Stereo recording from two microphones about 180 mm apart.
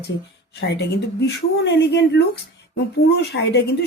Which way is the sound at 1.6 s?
75° left (ahead or behind).